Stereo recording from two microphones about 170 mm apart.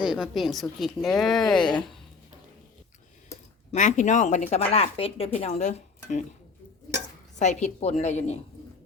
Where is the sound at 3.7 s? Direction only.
45° left (ahead or behind).